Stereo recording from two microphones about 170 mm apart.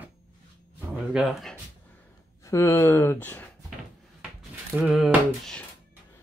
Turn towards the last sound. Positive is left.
turn(degrees=0)  # may be behind; listen again after turning